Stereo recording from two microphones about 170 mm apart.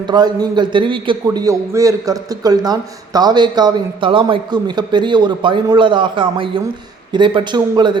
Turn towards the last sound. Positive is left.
turn(degrees=-25)  # may be behind; listen again after turning